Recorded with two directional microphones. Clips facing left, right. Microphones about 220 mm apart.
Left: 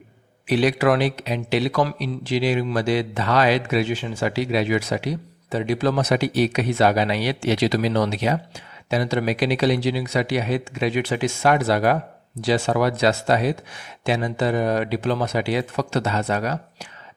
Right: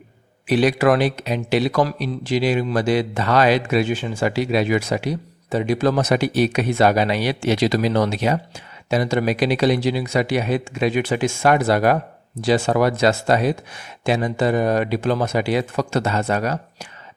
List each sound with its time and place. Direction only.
0.4 s a man's voice: 45° right (ahead or behind)